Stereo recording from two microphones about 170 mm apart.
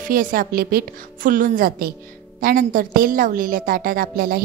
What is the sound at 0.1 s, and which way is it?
A woman's voice, 55° right (ahead or behind).